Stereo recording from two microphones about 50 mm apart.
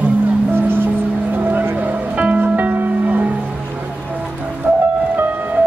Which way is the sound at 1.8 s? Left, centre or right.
Right.